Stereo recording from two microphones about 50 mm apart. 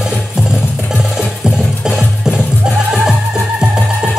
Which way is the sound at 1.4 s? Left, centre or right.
Centre.